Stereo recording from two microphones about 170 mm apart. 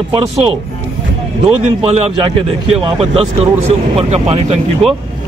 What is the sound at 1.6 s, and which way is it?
Speech, 40° right (ahead or behind).